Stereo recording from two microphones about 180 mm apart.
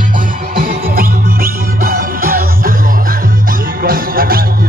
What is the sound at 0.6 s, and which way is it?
Music, 55° right (ahead or behind).